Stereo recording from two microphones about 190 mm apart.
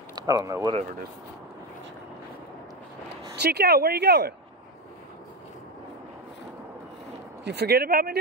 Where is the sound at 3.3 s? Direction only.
60° right (ahead or behind).